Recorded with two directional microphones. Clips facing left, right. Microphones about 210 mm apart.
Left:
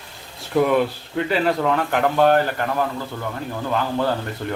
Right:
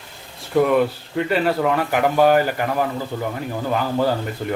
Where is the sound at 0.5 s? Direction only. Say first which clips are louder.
Right 1 dB; centre (ahead or behind).